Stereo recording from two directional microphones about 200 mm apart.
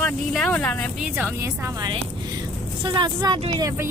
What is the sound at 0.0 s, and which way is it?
Speech, 5° left (ahead or behind).